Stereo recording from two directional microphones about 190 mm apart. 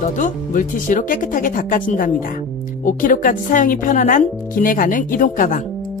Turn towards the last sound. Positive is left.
turn(degrees=45)  # may be behind; listen again after turning